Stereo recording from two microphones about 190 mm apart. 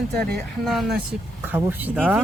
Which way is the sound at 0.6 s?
Centre (ahead or behind).